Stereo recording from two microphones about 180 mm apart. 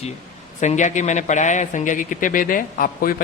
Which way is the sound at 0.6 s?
40° left (ahead or behind).